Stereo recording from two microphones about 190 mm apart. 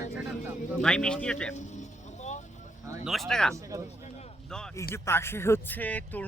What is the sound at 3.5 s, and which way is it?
Speech, 15° right (ahead or behind).